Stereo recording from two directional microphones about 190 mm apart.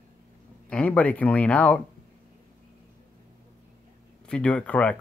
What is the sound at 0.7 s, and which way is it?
Speech, 5° left (ahead or behind).